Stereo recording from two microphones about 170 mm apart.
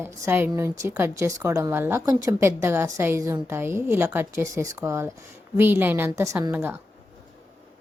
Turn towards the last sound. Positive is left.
turn(degrees=-15)  # may be behind; listen again after turning